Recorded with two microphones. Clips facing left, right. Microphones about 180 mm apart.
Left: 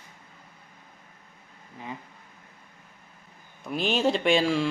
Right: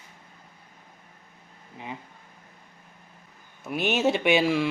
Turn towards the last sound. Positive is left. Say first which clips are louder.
# right 1 dB
turn(degrees=-5)  # may be behind; listen again after turning